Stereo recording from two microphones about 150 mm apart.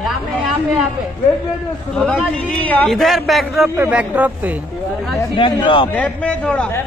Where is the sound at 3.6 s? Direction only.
15° right (ahead or behind).